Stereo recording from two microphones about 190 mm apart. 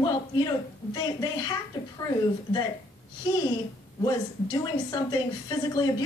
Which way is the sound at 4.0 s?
20° left (ahead or behind).